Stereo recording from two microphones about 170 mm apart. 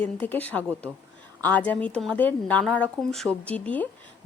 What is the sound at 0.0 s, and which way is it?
A woman's voice, 10° left (ahead or behind).